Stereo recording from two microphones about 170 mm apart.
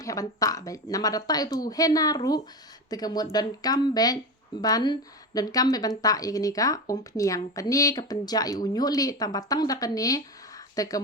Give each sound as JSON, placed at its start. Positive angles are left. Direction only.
{"t": 0.0, "sound": "speech", "side_deg": 20}